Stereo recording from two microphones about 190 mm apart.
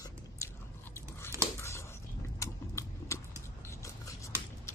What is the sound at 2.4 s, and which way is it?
Biting, 15° left (ahead or behind).